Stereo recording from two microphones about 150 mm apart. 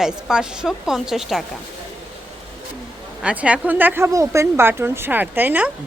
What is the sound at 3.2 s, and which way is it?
Speech, 10° right (ahead or behind).